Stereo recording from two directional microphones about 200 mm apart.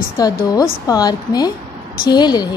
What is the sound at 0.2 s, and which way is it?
A woman's voice, 20° left (ahead or behind).